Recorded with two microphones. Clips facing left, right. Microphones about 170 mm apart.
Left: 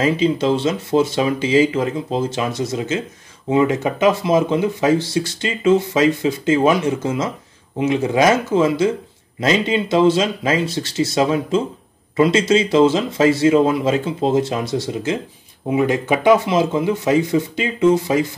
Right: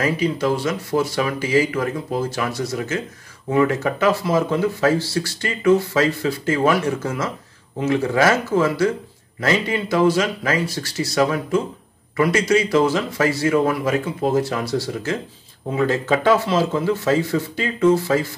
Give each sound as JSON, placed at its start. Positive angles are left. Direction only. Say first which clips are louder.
{"t": 0.0, "sound": "speech", "louder": "left 3 dB", "side_deg": 25}